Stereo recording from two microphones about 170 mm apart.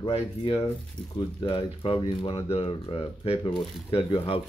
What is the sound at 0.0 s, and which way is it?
Speech, 35° left (ahead or behind).